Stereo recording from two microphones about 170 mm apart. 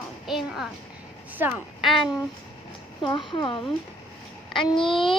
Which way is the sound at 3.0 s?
30° left (ahead or behind).